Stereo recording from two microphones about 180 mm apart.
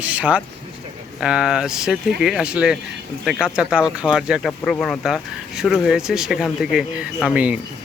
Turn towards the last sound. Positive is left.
turn(degrees=-5)  # may be behind; listen again after turning